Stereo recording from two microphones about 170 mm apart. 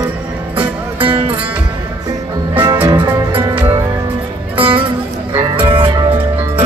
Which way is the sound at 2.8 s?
25° right (ahead or behind).